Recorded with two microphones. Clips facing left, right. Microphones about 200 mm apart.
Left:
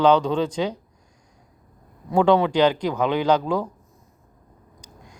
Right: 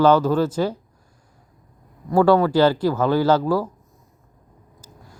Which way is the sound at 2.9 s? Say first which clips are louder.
Right 3 dB; 15° left (ahead or behind).